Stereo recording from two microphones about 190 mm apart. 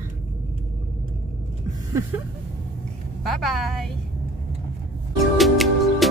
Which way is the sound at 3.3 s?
Centre (ahead or behind).